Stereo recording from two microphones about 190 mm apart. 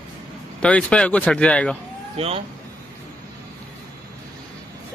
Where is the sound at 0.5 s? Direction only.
5° left (ahead or behind).